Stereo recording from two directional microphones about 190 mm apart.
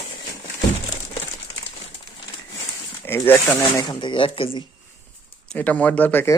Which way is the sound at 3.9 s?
25° left (ahead or behind).